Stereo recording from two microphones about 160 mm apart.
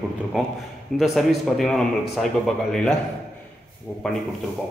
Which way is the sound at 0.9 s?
Centre (ahead or behind).